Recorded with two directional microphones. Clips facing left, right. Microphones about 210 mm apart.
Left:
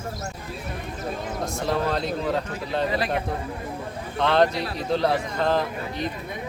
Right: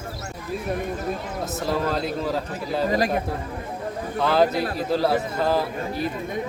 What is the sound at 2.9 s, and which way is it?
Speech, 45° right (ahead or behind).